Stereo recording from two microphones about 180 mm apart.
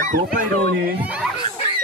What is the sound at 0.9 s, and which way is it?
Speech, 5° right (ahead or behind).